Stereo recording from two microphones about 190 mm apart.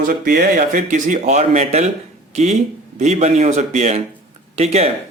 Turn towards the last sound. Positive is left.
turn(degrees=-35)  # may be behind; listen again after turning